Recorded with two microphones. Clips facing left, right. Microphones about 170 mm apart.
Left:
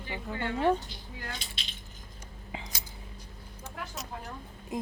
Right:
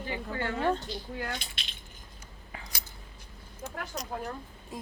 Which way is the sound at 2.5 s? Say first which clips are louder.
Left 4 dB; 20° left (ahead or behind).